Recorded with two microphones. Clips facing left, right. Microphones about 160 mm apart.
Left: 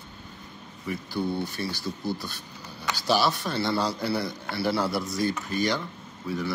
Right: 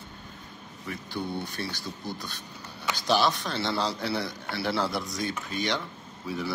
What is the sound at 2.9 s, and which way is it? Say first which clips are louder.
A man's voice: even; 5° left (ahead or behind).